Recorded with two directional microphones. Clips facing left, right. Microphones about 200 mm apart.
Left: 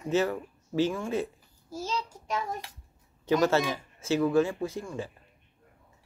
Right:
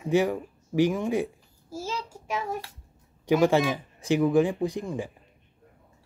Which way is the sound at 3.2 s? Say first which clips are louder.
Right 3 dB; 15° right (ahead or behind).